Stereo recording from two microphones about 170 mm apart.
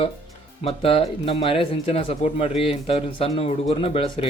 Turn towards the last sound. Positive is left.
turn(degrees=35)  # may be behind; listen again after turning